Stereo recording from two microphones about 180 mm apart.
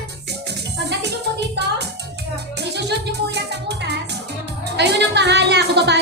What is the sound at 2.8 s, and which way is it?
Music, 70° right (ahead or behind).